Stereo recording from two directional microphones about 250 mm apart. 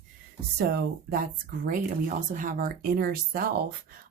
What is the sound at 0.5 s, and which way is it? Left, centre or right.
Speech, right.